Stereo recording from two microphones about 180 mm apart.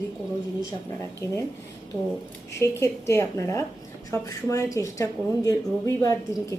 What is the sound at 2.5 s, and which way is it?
Speech, 15° left (ahead or behind).